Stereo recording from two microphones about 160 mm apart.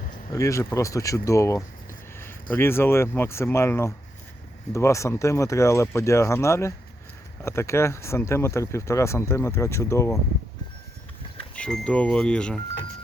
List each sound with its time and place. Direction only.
0.1 s speech: 20° left (ahead or behind)
11.5 s speech: 5° left (ahead or behind)